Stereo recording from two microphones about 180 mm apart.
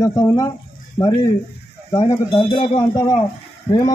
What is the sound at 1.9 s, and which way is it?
Speech, 25° left (ahead or behind).